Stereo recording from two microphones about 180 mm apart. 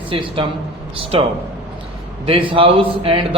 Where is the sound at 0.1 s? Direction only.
30° right (ahead or behind).